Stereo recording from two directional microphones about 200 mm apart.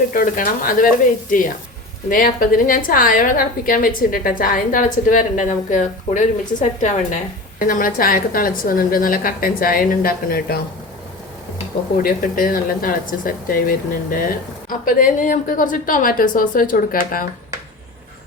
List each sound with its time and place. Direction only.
0.1 s a woman's voice: 45° left (ahead or behind)
12.0 s speech: 45° left (ahead or behind)